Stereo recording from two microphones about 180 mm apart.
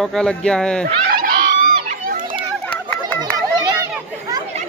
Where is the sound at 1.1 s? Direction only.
55° right (ahead or behind).